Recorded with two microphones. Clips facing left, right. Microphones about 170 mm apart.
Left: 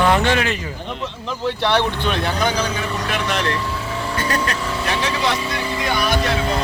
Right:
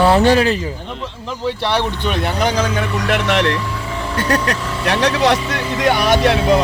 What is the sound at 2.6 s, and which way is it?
Speech, 60° right (ahead or behind).